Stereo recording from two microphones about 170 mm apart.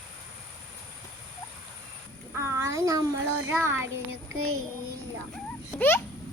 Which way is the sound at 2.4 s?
15° right (ahead or behind).